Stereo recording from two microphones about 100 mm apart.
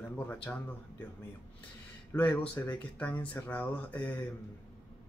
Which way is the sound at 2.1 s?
20° left (ahead or behind).